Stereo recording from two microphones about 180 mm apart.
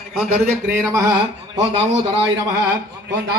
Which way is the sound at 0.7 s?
15° right (ahead or behind).